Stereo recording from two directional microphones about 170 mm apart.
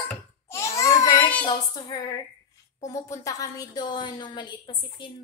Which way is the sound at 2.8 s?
20° left (ahead or behind).